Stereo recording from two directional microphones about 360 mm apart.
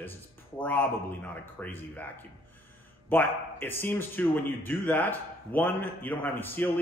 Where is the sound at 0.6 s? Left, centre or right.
Centre.